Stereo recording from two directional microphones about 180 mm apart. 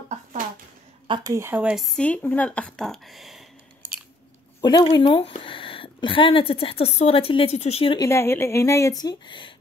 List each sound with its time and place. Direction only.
1.0 s speech: 25° right (ahead or behind); by 3.4 s centre (ahead or behind)
4.6 s speech: 20° left (ahead or behind)
4.8 s speech: 30° left (ahead or behind)
8.0 s speech: 15° left (ahead or behind)